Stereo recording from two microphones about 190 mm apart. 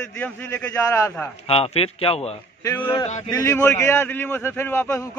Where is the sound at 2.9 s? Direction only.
30° left (ahead or behind).